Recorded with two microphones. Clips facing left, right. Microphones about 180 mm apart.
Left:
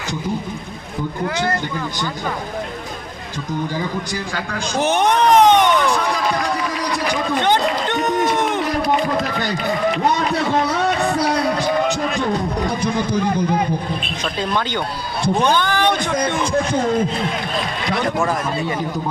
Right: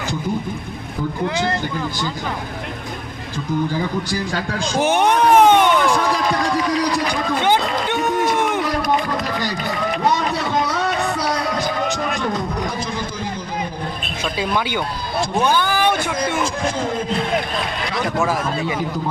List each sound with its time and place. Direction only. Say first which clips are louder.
4.8 s a sound: even; 10° right (ahead or behind)
7.1 s a sound: even; 10° right (ahead or behind)
8.3 s run: even; 10° right (ahead or behind)
12.8 s speech: left 7 dB; 65° left (ahead or behind)
14.3 s speech: even; 10° right (ahead or behind)
18.0 s speech: right 1 dB; 5° right (ahead or behind)